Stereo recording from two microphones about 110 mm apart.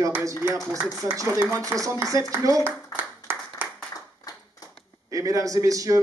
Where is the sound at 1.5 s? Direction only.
30° right (ahead or behind).